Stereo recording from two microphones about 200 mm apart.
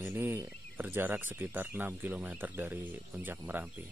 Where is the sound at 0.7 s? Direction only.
10° right (ahead or behind).